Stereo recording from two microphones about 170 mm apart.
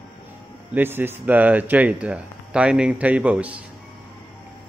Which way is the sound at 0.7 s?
10° right (ahead or behind).